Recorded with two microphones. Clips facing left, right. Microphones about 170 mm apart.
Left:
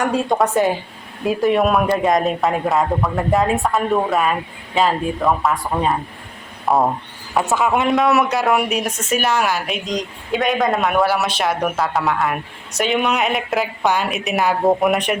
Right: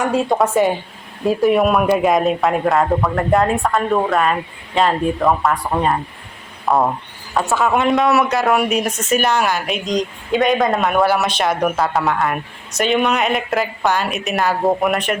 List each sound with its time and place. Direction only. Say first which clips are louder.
0.0 s speech: right 1 dB; centre (ahead or behind)
7.6 s speech: right 2 dB; centre (ahead or behind)
13.8 s speech: left 1 dB; 10° left (ahead or behind)
14.1 s speech: even; centre (ahead or behind)
14.8 s speech: left 1 dB; 15° left (ahead or behind)